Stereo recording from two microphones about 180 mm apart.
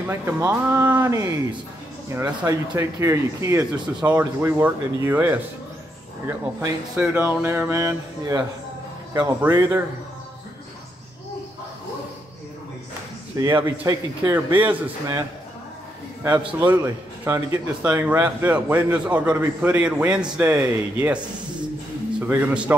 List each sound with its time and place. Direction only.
0.0 s a man's voice: 10° right (ahead or behind)
13.4 s a man's voice: 15° right (ahead or behind)
22.3 s a man's voice: 5° right (ahead or behind)